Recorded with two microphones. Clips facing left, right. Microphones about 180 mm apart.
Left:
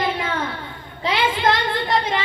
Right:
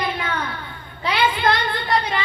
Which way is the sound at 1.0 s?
25° left (ahead or behind).